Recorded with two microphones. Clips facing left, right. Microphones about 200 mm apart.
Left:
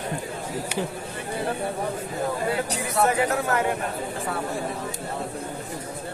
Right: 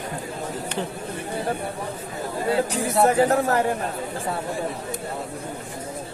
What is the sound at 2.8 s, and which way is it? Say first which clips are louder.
Speech: right 4 dB; 35° right (ahead or behind).